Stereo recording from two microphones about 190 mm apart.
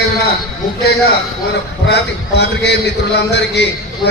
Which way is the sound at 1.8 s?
65° left (ahead or behind).